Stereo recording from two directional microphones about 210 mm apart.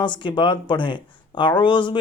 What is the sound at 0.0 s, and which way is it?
Speech, 20° left (ahead or behind).